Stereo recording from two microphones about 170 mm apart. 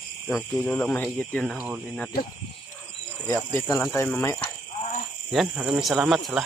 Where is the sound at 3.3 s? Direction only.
15° left (ahead or behind).